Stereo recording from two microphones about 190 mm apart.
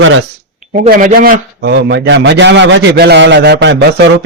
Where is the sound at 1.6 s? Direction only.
65° right (ahead or behind).